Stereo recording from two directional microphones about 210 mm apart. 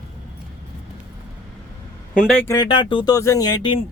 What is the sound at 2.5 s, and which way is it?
Speech, 20° left (ahead or behind).